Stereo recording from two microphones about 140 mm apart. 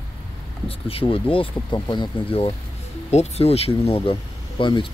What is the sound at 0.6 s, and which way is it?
Speech, 45° left (ahead or behind).